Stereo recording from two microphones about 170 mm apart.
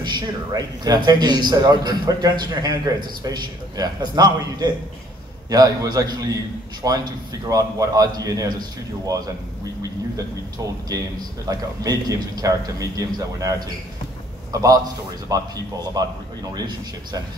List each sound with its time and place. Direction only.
0.0 s a man's voice: 25° right (ahead or behind)
11.4 s a man's voice: 20° right (ahead or behind)